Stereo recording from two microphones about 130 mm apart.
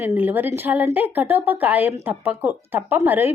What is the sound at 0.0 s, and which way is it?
A woman's voice, 15° right (ahead or behind).